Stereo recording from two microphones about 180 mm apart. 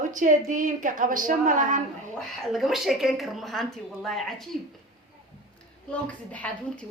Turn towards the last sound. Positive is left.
turn(degrees=5)  # may be behind; listen again after turning